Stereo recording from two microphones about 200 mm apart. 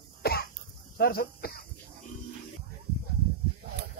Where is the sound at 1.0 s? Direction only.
50° left (ahead or behind).